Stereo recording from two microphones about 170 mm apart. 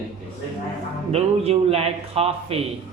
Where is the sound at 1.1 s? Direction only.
35° right (ahead or behind).